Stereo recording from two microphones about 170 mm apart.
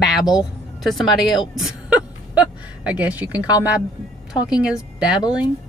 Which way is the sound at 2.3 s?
5° right (ahead or behind).